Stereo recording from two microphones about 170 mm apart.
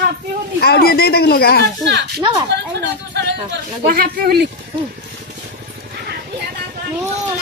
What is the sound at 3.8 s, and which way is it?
Speech, 60° right (ahead or behind).